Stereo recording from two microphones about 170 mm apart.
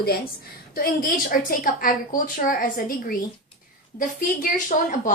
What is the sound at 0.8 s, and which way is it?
A woman's voice, 55° left (ahead or behind).